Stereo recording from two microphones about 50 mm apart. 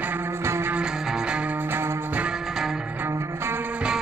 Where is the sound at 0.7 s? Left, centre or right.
Centre.